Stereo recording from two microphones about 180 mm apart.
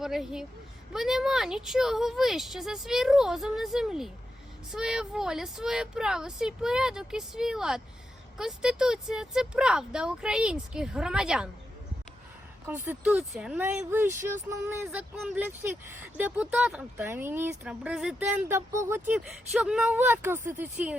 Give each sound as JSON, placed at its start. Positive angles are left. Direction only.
{"t": 0.0, "sound": "a woman's voice", "side_deg": 0}
{"t": 12.6, "sound": "speech", "side_deg": -10}
{"t": 18.5, "sound": "speech", "side_deg": -15}